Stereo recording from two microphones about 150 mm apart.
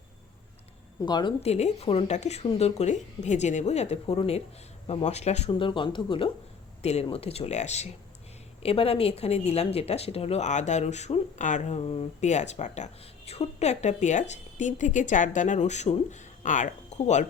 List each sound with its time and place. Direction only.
1.0 s speech: 30° left (ahead or behind)
1.4 s speech: 45° left (ahead or behind)
5.5 s speech: 35° left (ahead or behind); by 17.2 s 50° left (ahead or behind)